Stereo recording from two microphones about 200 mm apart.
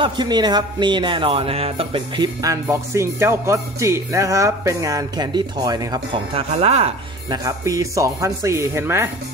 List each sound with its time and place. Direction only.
0.0 s a man's voice: 20° right (ahead or behind)
7.2 s speech: 15° right (ahead or behind)